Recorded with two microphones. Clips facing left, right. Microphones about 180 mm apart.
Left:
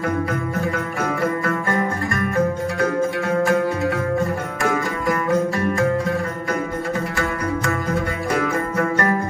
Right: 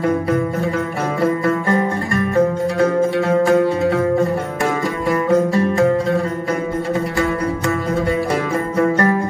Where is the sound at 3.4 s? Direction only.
20° right (ahead or behind).